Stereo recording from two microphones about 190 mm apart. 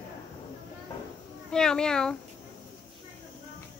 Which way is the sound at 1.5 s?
5° left (ahead or behind).